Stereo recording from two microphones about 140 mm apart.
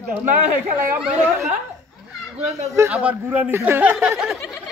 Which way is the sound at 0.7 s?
10° right (ahead or behind).